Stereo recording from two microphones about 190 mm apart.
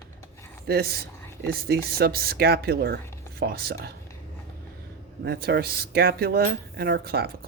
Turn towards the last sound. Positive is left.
turn(degrees=-55)  # may be behind; listen again after turning